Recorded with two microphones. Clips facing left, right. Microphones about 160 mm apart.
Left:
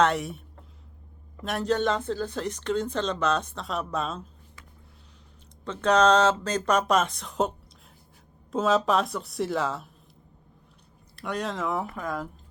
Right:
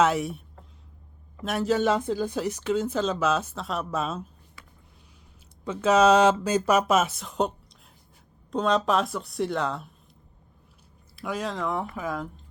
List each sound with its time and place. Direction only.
0.0 s speech: centre (ahead or behind)
5.6 s speech: 5° right (ahead or behind)
8.5 s speech: 5° left (ahead or behind)
11.2 s speech: centre (ahead or behind)